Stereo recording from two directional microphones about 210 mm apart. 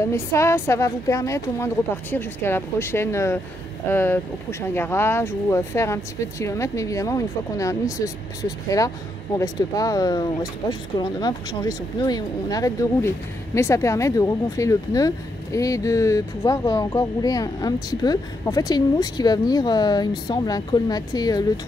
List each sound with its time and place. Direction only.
0.0 s speech: 10° left (ahead or behind)